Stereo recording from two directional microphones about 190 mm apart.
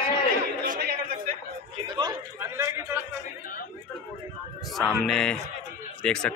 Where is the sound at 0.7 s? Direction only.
55° right (ahead or behind).